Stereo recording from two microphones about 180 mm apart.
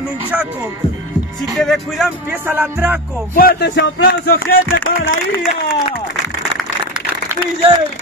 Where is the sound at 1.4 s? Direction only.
Centre (ahead or behind).